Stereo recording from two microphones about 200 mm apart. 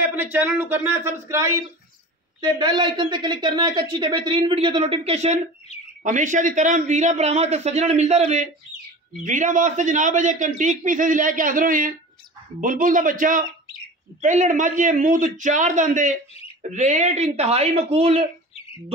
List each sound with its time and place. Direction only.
0.1 s a man's voice: 10° right (ahead or behind); by 18.2 s 30° right (ahead or behind)